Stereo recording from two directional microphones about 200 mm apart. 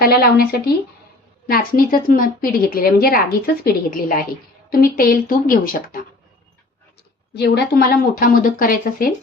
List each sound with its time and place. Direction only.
0.0 s a woman's voice: 50° left (ahead or behind)
7.3 s a woman's voice: 55° left (ahead or behind)